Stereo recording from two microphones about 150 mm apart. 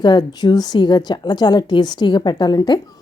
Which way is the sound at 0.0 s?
30° left (ahead or behind).